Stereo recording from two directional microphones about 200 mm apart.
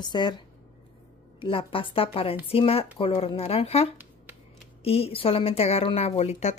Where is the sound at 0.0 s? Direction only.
20° left (ahead or behind).